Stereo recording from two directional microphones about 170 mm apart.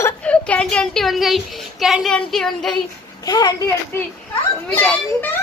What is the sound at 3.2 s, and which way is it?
Speech, 20° left (ahead or behind).